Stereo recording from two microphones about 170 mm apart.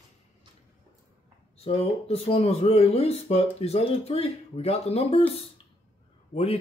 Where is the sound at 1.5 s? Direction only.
35° left (ahead or behind).